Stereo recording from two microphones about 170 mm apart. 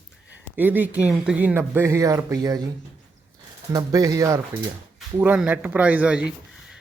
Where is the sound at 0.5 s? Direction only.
10° right (ahead or behind).